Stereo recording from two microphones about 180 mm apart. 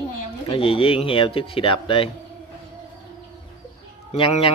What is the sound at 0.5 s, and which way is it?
Speech, 30° left (ahead or behind).